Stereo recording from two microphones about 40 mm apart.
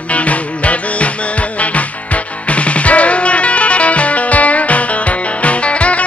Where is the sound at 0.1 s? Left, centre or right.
Left.